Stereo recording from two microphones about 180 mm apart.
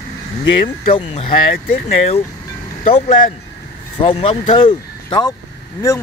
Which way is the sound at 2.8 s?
35° left (ahead or behind).